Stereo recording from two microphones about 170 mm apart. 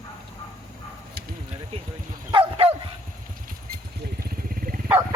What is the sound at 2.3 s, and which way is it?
Bow-wow, 35° right (ahead or behind).